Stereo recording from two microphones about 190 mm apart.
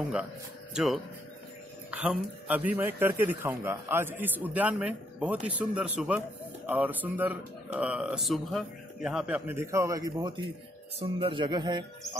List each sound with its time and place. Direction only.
0.7 s speech: centre (ahead or behind); by 12.2 s 20° right (ahead or behind)